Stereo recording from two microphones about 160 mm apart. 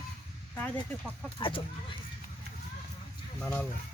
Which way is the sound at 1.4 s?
35° left (ahead or behind).